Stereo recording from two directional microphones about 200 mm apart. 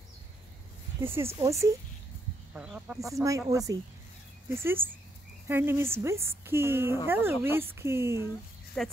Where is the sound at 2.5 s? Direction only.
5° right (ahead or behind).